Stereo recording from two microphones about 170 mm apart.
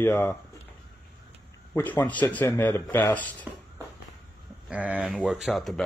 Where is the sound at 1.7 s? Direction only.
10° left (ahead or behind).